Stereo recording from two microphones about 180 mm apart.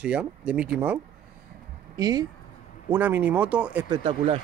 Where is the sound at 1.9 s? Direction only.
20° right (ahead or behind).